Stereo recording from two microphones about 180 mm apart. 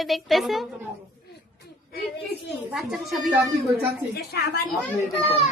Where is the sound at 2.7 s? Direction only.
Centre (ahead or behind).